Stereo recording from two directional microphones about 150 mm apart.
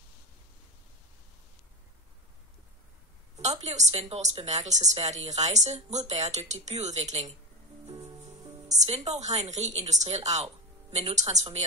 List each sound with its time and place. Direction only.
3.6 s speech: 45° right (ahead or behind)
8.2 s music: 50° right (ahead or behind)
9.3 s speech: 50° right (ahead or behind)